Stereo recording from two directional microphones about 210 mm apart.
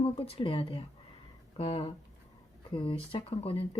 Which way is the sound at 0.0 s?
25° left (ahead or behind).